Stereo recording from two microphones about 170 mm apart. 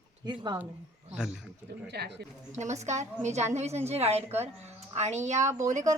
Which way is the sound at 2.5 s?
45° right (ahead or behind).